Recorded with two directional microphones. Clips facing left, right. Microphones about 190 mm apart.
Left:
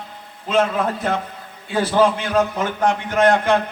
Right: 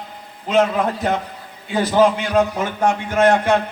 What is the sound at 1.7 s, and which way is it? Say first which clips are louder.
Speech: right 1 dB; 15° right (ahead or behind).